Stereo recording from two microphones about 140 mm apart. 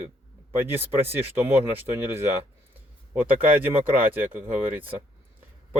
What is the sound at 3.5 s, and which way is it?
Speech, 15° right (ahead or behind).